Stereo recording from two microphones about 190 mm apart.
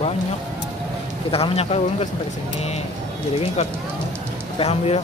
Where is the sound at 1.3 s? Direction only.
30° left (ahead or behind).